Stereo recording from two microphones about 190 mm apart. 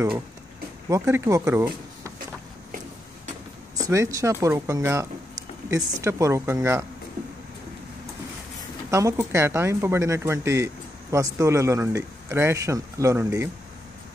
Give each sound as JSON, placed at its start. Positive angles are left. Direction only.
{"t": 0.8, "sound": "speech", "side_deg": -15}
{"t": 3.7, "sound": "speech", "side_deg": -15}
{"t": 8.9, "sound": "speech", "side_deg": -15}